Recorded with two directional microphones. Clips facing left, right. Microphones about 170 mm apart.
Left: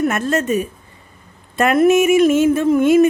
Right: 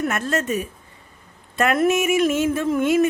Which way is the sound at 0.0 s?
20° left (ahead or behind).